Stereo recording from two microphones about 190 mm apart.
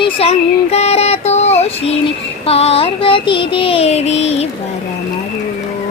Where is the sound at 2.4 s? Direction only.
30° left (ahead or behind).